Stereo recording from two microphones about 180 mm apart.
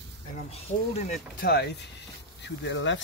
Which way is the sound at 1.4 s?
65° left (ahead or behind).